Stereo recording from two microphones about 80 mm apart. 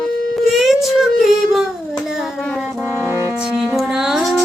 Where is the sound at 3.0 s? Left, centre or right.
Right.